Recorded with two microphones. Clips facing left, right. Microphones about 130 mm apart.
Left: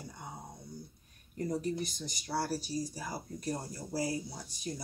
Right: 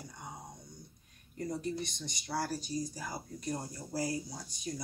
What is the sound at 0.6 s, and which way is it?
Dog, 35° left (ahead or behind).